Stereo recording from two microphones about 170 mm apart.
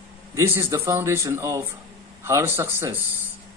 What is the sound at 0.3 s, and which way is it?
A man's voice, 15° right (ahead or behind).